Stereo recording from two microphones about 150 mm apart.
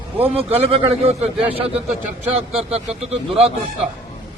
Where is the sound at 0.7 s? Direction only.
40° right (ahead or behind).